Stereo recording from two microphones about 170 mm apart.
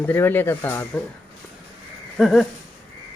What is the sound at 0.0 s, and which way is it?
Speech, 10° left (ahead or behind).